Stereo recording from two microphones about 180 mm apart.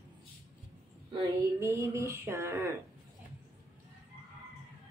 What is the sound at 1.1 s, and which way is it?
Female singing, 15° right (ahead or behind).